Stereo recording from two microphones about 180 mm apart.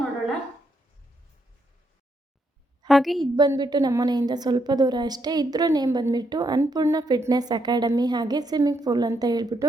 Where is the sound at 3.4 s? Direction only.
25° right (ahead or behind).